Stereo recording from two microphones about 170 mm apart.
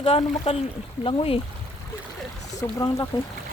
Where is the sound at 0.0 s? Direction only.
35° left (ahead or behind).